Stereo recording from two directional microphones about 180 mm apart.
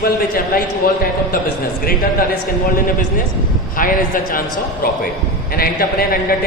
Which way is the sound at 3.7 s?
50° left (ahead or behind).